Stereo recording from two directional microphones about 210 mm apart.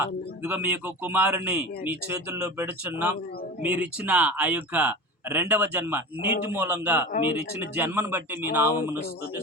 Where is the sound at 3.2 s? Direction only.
45° left (ahead or behind).